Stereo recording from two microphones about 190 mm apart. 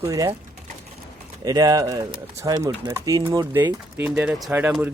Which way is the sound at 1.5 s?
20° right (ahead or behind).